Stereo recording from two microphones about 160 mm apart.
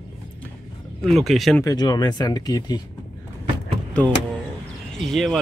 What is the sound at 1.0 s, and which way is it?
Speech, centre (ahead or behind).